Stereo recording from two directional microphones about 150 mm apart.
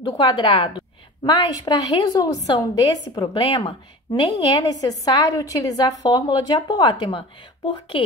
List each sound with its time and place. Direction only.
0.0 s a woman's voice: 30° left (ahead or behind)